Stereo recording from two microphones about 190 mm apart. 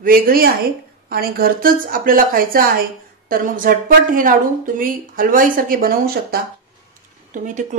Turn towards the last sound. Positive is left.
turn(degrees=-40)  # may be behind; listen again after turning